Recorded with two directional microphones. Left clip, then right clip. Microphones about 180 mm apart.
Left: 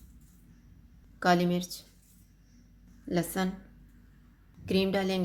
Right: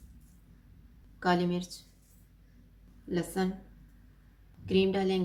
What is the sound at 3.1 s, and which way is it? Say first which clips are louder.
Speech: left 1 dB; 45° left (ahead or behind).